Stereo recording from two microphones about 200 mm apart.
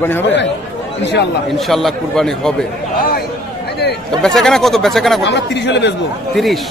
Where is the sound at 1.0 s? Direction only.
60° left (ahead or behind).